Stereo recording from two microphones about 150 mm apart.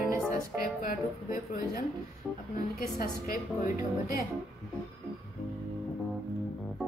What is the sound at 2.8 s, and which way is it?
Speech, 90° left.